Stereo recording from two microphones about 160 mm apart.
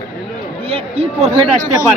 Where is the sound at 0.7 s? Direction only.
40° right (ahead or behind).